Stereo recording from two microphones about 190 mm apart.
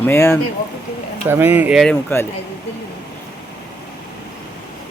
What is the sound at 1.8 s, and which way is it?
Speech, 10° left (ahead or behind).